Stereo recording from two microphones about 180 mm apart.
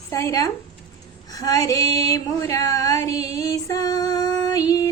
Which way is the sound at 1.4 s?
20° left (ahead or behind).